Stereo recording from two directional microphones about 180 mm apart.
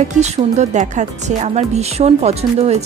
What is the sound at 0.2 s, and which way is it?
A woman's voice, 40° right (ahead or behind).